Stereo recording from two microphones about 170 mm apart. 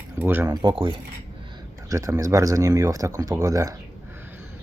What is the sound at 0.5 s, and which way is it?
Speech, 25° right (ahead or behind).